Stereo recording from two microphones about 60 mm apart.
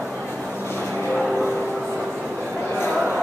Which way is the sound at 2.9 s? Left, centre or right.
Centre.